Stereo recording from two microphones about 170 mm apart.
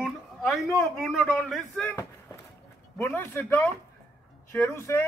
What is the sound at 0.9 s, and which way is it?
Speech, 5° left (ahead or behind).